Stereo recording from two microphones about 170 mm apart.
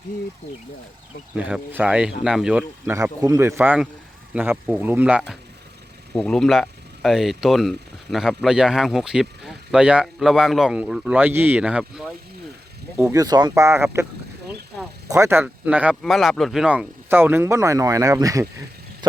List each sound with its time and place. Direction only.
1.4 s speech: 5° right (ahead or behind)
2.9 s speech: 20° right (ahead or behind)
6.1 s speech: 5° left (ahead or behind)
13.0 s speech: 20° right (ahead or behind)
15.1 s speech: 15° right (ahead or behind)